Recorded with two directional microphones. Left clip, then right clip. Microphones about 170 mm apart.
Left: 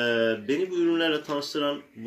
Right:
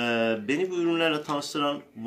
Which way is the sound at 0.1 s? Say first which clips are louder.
Left 1 dB; 20° right (ahead or behind).